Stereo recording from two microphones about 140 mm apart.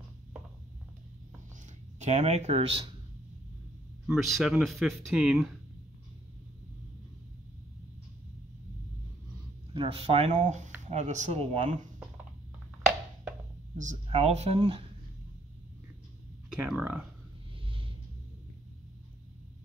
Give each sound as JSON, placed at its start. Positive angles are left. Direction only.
{"t": 2.0, "sound": "speech", "side_deg": -55}
{"t": 4.1, "sound": "speech", "side_deg": 0}
{"t": 9.8, "sound": "speech", "side_deg": -45}
{"t": 14.0, "sound": "speech", "side_deg": -50}
{"t": 16.5, "sound": "speech", "side_deg": -10}
{"t": 17.6, "sound": "a sound", "side_deg": -40}